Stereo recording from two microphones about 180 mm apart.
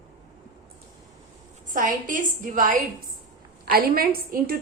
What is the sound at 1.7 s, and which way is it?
A woman's voice, 45° right (ahead or behind).